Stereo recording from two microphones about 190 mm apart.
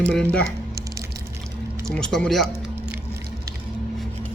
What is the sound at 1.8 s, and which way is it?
Speech, 5° left (ahead or behind).